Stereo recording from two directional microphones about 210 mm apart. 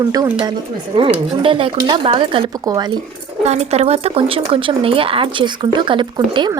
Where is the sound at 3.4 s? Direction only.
30° right (ahead or behind).